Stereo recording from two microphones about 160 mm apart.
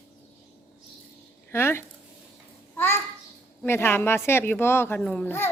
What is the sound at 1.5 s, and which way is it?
A child's voice, 15° left (ahead or behind).